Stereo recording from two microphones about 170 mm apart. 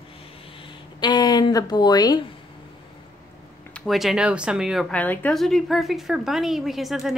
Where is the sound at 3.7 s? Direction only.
Centre (ahead or behind).